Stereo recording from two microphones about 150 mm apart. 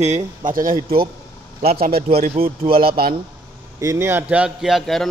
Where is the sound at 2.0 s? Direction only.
40° right (ahead or behind).